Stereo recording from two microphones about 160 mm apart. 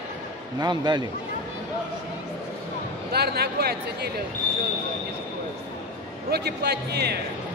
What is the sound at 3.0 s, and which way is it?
Speech, 80° right.